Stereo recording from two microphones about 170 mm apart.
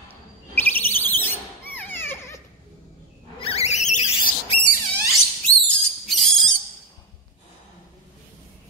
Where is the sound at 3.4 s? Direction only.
40° left (ahead or behind).